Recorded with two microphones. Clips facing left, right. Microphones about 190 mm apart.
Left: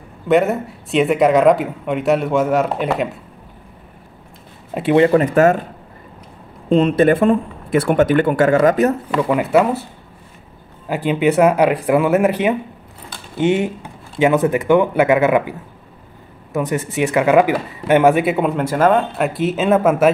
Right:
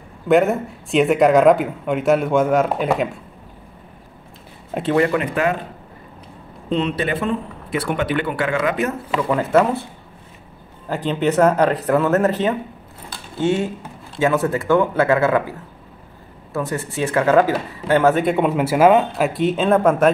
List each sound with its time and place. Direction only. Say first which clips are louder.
0.3 s speech: even; centre (ahead or behind)
4.8 s speech: left 5 dB; 25° left (ahead or behind)
5.1 s speech: left 7 dB; 45° left (ahead or behind)
6.7 s speech: left 8 dB; 45° left (ahead or behind)
9.3 s speech: left 1 dB; 10° left (ahead or behind)
10.9 s speech: left 3 dB; 10° left (ahead or behind)
16.5 s speech: left 4 dB; 20° left (ahead or behind)